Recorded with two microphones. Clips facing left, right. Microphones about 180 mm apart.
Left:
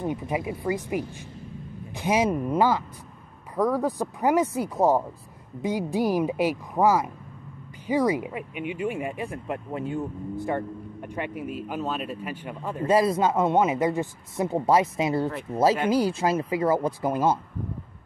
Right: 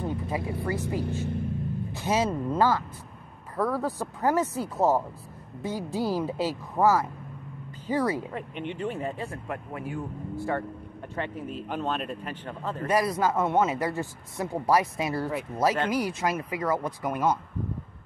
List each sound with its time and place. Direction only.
0.0 s speech: 15° left (ahead or behind)
12.8 s speech: 25° left (ahead or behind)